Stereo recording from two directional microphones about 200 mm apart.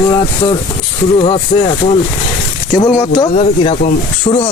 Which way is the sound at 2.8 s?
15° left (ahead or behind).